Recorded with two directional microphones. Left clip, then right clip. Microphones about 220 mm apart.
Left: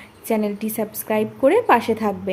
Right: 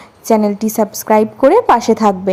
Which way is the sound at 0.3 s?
25° right (ahead or behind).